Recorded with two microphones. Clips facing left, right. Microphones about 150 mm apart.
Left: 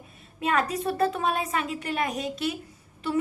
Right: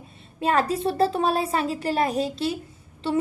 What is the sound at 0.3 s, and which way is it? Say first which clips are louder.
A child's voice: right 3 dB; 30° right (ahead or behind).